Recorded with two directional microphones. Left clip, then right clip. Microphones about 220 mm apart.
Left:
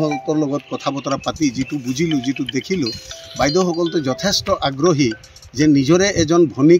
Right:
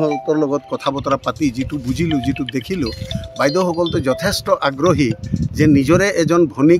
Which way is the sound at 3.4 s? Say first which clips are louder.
Right 1 dB; 5° right (ahead or behind).